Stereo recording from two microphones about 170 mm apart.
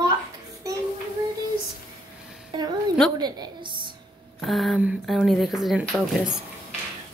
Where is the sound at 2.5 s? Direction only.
25° right (ahead or behind).